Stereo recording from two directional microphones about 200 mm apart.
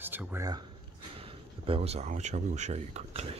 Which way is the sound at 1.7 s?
30° right (ahead or behind).